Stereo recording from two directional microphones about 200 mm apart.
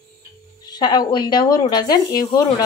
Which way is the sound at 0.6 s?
20° left (ahead or behind).